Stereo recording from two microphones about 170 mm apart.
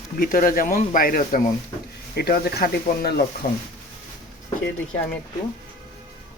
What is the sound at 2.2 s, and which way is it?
Speech, 70° left (ahead or behind).